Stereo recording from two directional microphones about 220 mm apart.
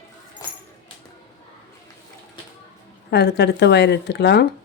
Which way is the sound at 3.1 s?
50° left (ahead or behind).